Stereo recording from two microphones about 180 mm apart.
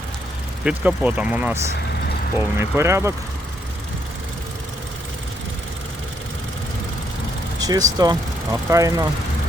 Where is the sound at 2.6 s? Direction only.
15° right (ahead or behind).